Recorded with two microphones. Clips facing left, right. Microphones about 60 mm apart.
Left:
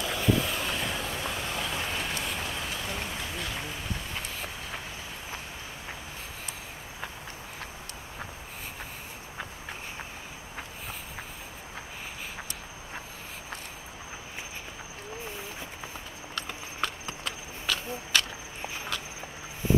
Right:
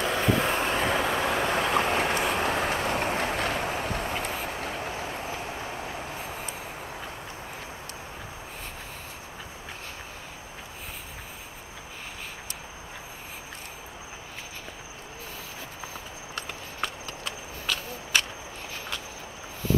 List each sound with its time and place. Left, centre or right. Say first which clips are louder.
0.0 s vehicle: right 3 dB; right
0.9 s vehicle: right 8 dB; right
18.1 s walk: right 1 dB; centre